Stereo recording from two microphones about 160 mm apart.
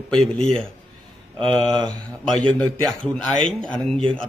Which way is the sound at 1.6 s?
30° right (ahead or behind).